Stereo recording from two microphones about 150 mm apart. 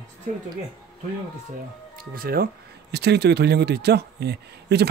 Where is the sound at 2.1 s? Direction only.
85° right.